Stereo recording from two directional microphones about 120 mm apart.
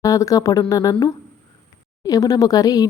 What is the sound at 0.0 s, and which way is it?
A woman's voice, 30° left (ahead or behind).